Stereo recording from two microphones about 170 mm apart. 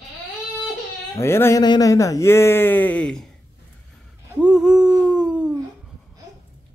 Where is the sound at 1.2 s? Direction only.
15° left (ahead or behind).